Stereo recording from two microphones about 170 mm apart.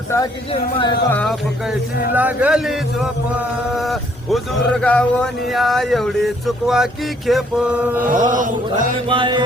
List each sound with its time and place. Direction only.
0.5 s speech: 30° left (ahead or behind)
1.1 s a man's voice: 5° left (ahead or behind)
2.1 s a man's voice: 10° right (ahead or behind)
7.9 s chant: 50° right (ahead or behind)
9.0 s music: 30° right (ahead or behind)